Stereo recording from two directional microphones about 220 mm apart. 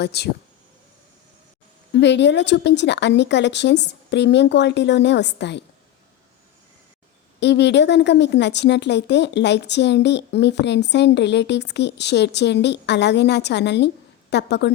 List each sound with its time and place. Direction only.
0.0 s a woman's voice: 50° left (ahead or behind)
1.9 s a woman's voice: 50° left (ahead or behind)
7.3 s a woman's voice: 50° left (ahead or behind)